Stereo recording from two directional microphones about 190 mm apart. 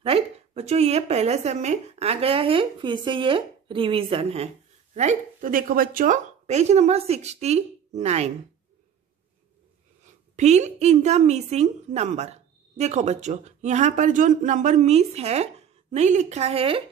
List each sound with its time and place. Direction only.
0.0 s a woman's voice: 35° right (ahead or behind)
10.3 s a woman's voice: 35° right (ahead or behind)